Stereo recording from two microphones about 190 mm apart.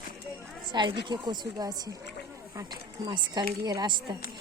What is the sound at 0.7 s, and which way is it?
Speech, 25° right (ahead or behind).